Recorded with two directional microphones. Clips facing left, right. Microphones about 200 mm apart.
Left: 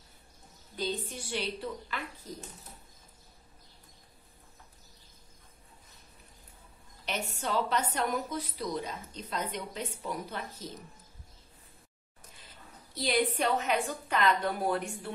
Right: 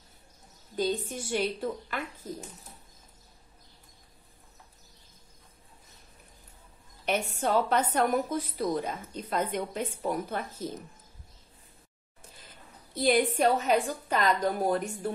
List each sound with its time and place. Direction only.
0.7 s a woman's voice: 45° right (ahead or behind)
7.1 s a woman's voice: 50° right (ahead or behind)
12.9 s a woman's voice: 50° right (ahead or behind)